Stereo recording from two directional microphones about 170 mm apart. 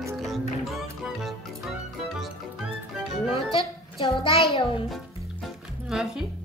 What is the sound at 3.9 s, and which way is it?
Speech, 30° left (ahead or behind).